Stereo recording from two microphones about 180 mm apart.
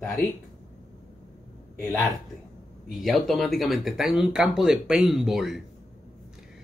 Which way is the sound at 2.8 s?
Centre (ahead or behind).